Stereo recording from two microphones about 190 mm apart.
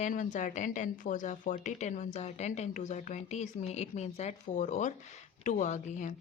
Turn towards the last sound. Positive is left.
turn(degrees=40)  # may be behind; listen again after turning